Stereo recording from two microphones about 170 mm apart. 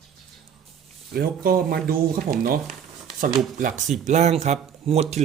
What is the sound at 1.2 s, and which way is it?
Speech, 60° right (ahead or behind).